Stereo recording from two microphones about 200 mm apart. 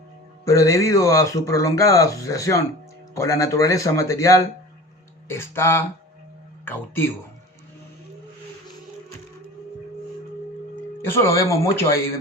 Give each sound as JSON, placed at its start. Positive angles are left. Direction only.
{"t": 0.4, "sound": "speech", "side_deg": 15}
{"t": 11.1, "sound": "speech", "side_deg": 15}